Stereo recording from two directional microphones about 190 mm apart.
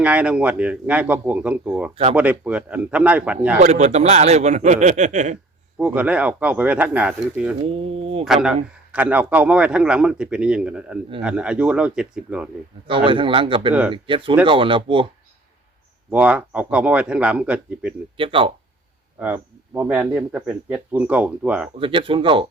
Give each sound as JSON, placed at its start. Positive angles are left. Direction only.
{"t": 0.0, "sound": "speech", "side_deg": -5}
{"t": 3.6, "sound": "speech", "side_deg": -35}
{"t": 5.7, "sound": "speech", "side_deg": -10}
{"t": 7.6, "sound": "speech", "side_deg": -30}
{"t": 8.2, "sound": "a man's voice", "side_deg": 0}
{"t": 13.1, "sound": "speech", "side_deg": -25}
{"t": 16.0, "sound": "speech", "side_deg": -5}
{"t": 18.2, "sound": "speech", "side_deg": -30}
{"t": 19.2, "sound": "speech", "side_deg": -10}
{"t": 21.8, "sound": "speech", "side_deg": -25}